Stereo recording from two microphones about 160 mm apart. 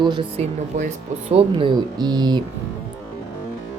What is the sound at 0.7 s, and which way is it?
Speech, 55° right (ahead or behind).